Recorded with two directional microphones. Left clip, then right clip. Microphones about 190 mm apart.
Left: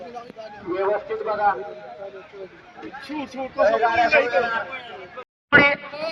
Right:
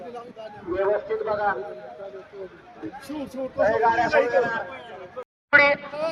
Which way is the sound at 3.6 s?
20° left (ahead or behind).